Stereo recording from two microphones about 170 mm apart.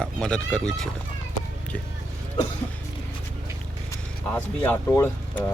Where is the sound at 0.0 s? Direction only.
5° left (ahead or behind).